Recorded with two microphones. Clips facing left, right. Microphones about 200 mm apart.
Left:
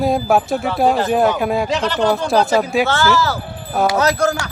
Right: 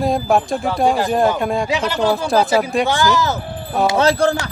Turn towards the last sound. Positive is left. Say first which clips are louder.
# right 1 dB
turn(degrees=-30)  # may be behind; listen again after turning